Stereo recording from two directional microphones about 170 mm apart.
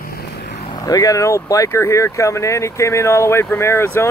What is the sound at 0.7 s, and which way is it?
Speech, 20° left (ahead or behind).